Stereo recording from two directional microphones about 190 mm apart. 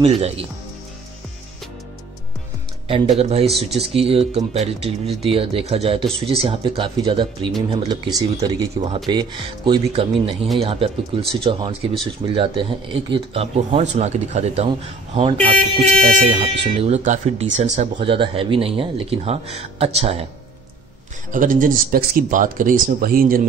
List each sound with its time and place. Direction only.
0.0 s speech: 30° right (ahead or behind)
2.9 s speech: 30° right (ahead or behind)
15.8 s speech: 35° right (ahead or behind)
21.3 s speech: 45° right (ahead or behind)